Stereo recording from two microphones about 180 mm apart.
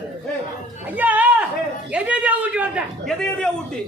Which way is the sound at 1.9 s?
5° right (ahead or behind).